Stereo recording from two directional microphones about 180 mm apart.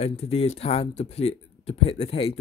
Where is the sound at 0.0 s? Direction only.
35° left (ahead or behind).